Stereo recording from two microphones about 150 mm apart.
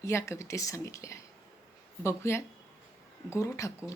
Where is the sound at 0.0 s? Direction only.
20° left (ahead or behind).